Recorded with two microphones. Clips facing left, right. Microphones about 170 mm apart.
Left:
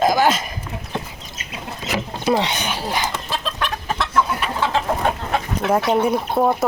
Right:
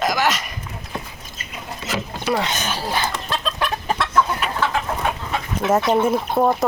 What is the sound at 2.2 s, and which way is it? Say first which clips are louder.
Speech: left 3 dB; 20° left (ahead or behind).